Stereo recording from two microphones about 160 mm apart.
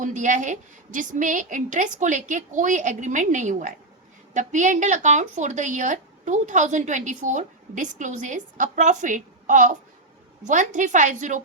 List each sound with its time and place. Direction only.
0.0 s a woman's voice: 50° right (ahead or behind)